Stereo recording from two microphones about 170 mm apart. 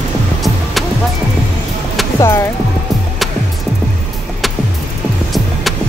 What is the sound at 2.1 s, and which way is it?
Music, 15° left (ahead or behind).